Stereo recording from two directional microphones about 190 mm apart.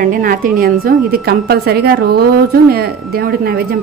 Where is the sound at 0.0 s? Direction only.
50° right (ahead or behind).